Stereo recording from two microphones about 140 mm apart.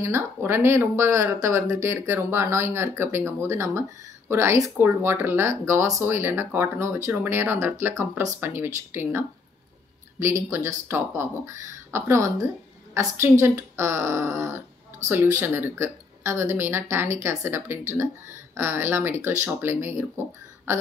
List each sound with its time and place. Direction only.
0.0 s speech: 15° right (ahead or behind)